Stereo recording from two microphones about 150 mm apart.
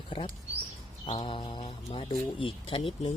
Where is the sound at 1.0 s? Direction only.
35° left (ahead or behind).